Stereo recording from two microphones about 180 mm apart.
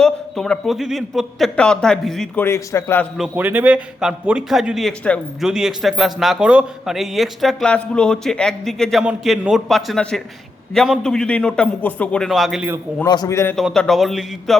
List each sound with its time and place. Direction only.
0.0 s speech: 5° left (ahead or behind)
3.2 s speech: 10° right (ahead or behind)
13.1 s a man's voice: 20° left (ahead or behind)
13.6 s speech: centre (ahead or behind)